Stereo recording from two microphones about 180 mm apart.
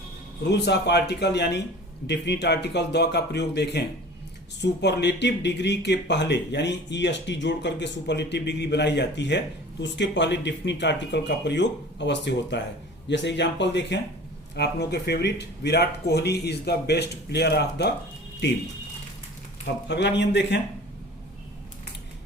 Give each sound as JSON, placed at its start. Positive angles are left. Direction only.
{"t": 0.4, "sound": "speech", "side_deg": 70}
{"t": 19.9, "sound": "speech", "side_deg": 70}